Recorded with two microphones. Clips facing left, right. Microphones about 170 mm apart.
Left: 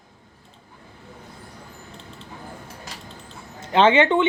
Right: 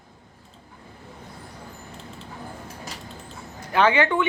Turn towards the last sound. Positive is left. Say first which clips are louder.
# left 4 dB
turn(degrees=25)  # may be behind; listen again after turning